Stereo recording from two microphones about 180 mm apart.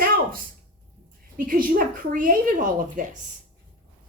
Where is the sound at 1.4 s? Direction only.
50° right (ahead or behind).